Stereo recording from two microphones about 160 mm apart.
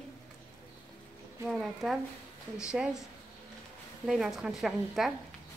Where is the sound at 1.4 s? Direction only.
Centre (ahead or behind).